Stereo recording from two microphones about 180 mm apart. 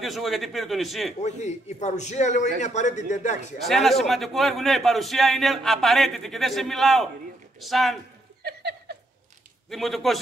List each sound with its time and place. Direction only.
0.0 s a man's voice: centre (ahead or behind)
1.2 s a man's voice: 40° left (ahead or behind)
3.6 s a man's voice: centre (ahead or behind)
8.4 s laughter: 65° right (ahead or behind)
9.7 s a man's voice: centre (ahead or behind)